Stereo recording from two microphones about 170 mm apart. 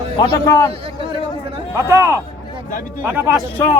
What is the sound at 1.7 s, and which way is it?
Speech, 15° right (ahead or behind).